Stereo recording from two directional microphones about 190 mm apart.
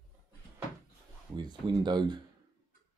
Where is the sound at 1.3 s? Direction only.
20° right (ahead or behind).